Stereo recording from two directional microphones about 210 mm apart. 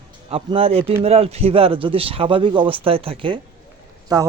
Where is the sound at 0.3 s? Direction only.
25° right (ahead or behind).